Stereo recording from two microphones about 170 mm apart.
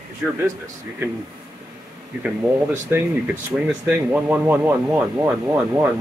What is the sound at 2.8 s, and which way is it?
Speech, 10° right (ahead or behind).